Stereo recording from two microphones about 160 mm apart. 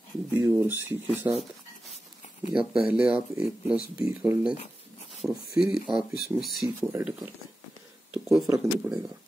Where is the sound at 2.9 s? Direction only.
10° right (ahead or behind).